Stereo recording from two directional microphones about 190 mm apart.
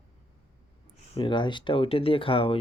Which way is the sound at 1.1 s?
25° left (ahead or behind).